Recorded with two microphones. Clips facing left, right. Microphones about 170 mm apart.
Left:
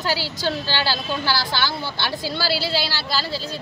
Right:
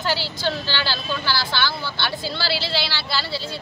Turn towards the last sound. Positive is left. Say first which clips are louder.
# left 1 dB
turn(degrees=40)  # may be behind; listen again after turning